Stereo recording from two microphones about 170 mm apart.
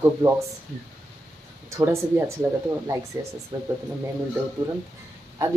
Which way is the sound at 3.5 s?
20° right (ahead or behind).